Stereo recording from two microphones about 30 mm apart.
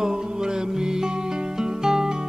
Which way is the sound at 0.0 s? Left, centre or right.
Right.